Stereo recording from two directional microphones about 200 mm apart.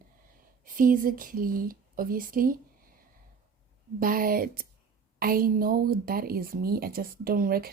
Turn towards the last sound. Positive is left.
turn(degrees=-50)  # may be behind; listen again after turning